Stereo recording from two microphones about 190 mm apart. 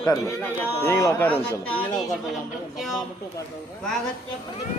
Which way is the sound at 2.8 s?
Centre (ahead or behind).